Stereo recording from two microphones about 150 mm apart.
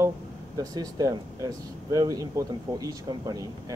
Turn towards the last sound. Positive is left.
turn(degrees=-25)  # may be behind; listen again after turning